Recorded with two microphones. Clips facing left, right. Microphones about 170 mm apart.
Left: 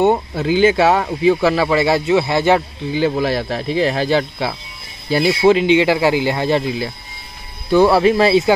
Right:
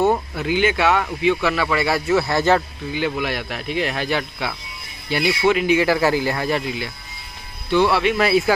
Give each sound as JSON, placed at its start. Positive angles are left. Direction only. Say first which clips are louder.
{"t": 0.0, "sound": "speech", "louder": "left 4 dB", "side_deg": 25}
{"t": 2.9, "sound": "speech", "louder": "left 6 dB", "side_deg": 30}
{"t": 7.7, "sound": "speech", "louder": "left 6 dB", "side_deg": 40}